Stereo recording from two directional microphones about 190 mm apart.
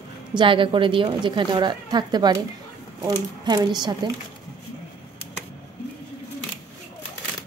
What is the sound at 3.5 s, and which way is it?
Speech, 20° right (ahead or behind).